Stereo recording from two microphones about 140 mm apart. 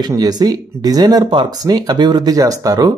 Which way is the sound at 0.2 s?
30° right (ahead or behind).